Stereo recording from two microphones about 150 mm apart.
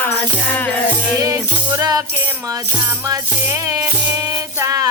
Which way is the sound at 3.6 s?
25° right (ahead or behind).